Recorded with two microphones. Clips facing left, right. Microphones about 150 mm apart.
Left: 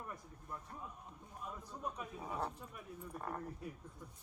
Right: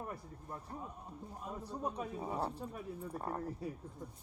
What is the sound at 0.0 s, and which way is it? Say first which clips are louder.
A man's voice: right 5 dB; 35° right (ahead or behind).